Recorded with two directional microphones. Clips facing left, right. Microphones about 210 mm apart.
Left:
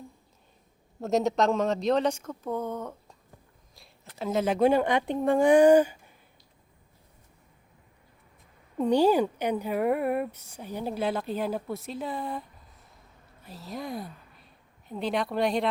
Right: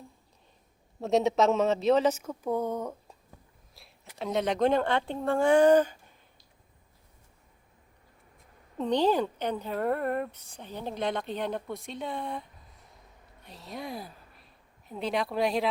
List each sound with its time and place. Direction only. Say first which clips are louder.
1.0 s speech: right 1 dB; centre (ahead or behind)
8.8 s a woman's voice: left 4 dB; 10° left (ahead or behind)